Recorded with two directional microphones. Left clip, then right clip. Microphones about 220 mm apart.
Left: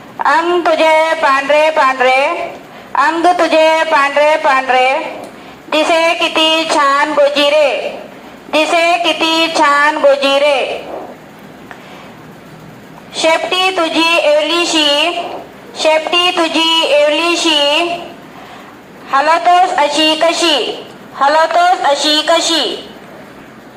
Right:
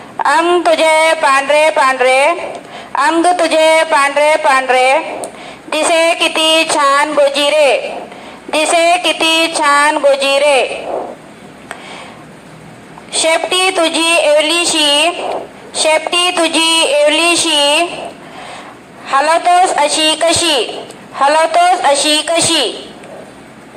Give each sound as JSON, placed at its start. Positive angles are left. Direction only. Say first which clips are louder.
{"t": 0.2, "sound": "a woman's voice", "louder": "right 1 dB", "side_deg": -50}
{"t": 13.1, "sound": "a woman's voice", "louder": "even", "side_deg": -50}
{"t": 19.0, "sound": "a woman's voice", "louder": "even", "side_deg": -50}